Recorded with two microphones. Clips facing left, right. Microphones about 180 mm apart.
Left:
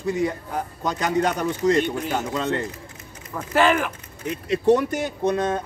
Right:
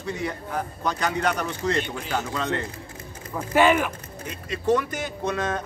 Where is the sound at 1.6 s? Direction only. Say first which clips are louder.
Left 7 dB; 45° left (ahead or behind).